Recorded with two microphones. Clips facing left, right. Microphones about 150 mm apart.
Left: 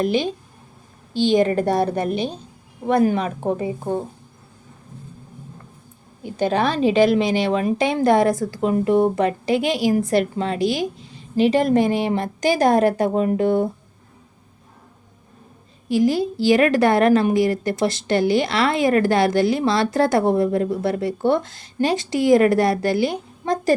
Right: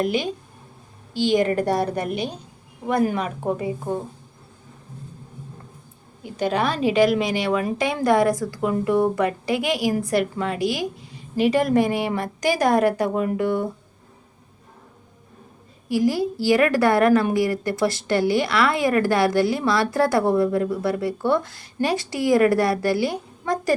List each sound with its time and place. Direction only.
0.0 s a woman's voice: 30° left (ahead or behind)
6.4 s a woman's voice: 30° left (ahead or behind)
15.9 s a woman's voice: 20° left (ahead or behind)